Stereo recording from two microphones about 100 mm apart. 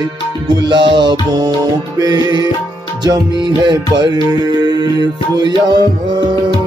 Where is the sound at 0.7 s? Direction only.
55° right (ahead or behind).